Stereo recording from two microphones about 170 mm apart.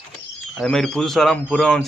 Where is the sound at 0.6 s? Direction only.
5° left (ahead or behind).